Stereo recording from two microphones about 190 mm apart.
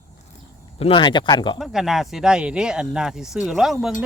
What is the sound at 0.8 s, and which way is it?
Speech, 25° left (ahead or behind).